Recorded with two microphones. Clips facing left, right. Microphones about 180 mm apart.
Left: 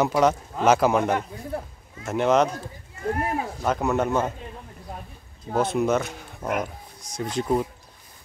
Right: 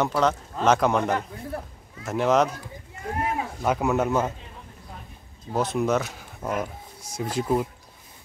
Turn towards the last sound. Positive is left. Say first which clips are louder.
# even
turn(degrees=-5)  # may be behind; listen again after turning